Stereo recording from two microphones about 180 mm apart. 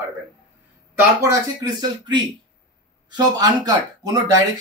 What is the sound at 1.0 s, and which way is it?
Speech, 20° right (ahead or behind).